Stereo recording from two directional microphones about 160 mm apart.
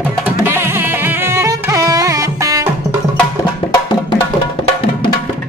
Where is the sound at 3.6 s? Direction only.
25° left (ahead or behind).